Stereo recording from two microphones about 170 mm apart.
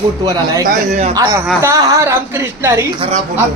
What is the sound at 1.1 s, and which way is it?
A man's voice, 25° right (ahead or behind).